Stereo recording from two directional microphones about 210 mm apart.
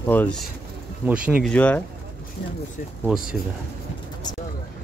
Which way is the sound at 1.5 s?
5° left (ahead or behind).